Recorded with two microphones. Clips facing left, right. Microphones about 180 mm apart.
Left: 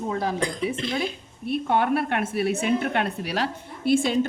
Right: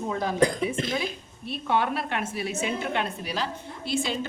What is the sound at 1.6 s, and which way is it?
A woman's voice, 50° left (ahead or behind).